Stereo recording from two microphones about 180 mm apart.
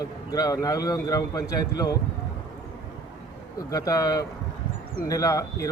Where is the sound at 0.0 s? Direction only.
20° left (ahead or behind).